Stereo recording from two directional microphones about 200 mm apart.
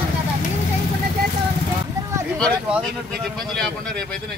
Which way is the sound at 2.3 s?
5° left (ahead or behind).